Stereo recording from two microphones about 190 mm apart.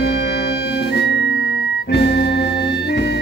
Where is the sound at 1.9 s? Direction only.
60° left (ahead or behind).